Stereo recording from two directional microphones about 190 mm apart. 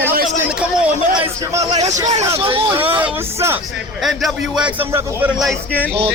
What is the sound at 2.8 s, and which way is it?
Speech, 10° right (ahead or behind).